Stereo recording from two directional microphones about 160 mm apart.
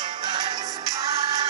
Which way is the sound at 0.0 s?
30° right (ahead or behind).